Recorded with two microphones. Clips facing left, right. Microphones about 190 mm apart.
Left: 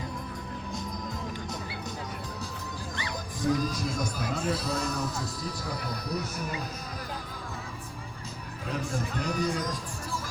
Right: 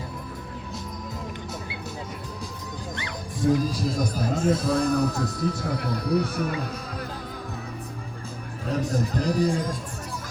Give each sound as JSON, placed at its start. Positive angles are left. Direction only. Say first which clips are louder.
{"t": 3.4, "sound": "a man's voice", "louder": "right 5 dB", "side_deg": -30}
{"t": 8.7, "sound": "speech", "louder": "right 7 dB", "side_deg": -40}